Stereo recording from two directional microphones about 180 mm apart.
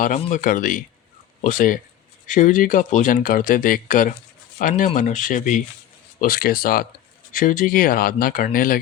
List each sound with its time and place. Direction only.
0.0 s speech: 45° left (ahead or behind)